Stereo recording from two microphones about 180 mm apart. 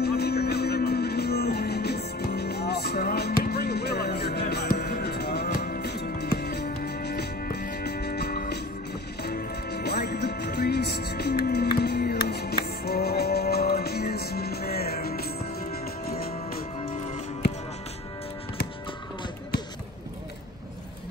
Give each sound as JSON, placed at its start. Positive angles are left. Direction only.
{"t": 0.0, "sound": "music", "side_deg": 60}
{"t": 17.4, "sound": "music", "side_deg": 65}